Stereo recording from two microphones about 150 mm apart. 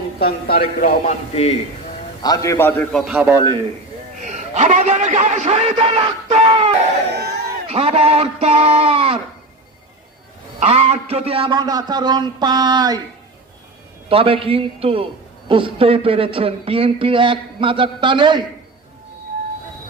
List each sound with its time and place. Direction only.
0.2 s speech: 90° left
1.0 s a man's voice: 40° left (ahead or behind)
2.2 s a man's voice: 25° left (ahead or behind)
3.0 s a man's voice: 5° right (ahead or behind)
3.2 s a man's voice: 25° right (ahead or behind)
4.2 s a man's voice: 50° right (ahead or behind)
6.3 s a sound: 45° right (ahead or behind)
7.1 s a sound: 90° right
7.7 s speech: 40° right (ahead or behind)
10.6 s a man's voice: 45° right (ahead or behind); by 13.0 s 25° right (ahead or behind)
14.1 s speech: 40° right (ahead or behind)